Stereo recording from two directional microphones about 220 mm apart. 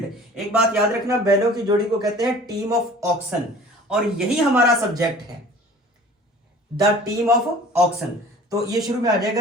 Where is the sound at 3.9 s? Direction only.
5° right (ahead or behind).